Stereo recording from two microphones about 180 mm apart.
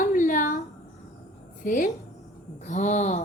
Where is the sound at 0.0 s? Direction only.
45° left (ahead or behind).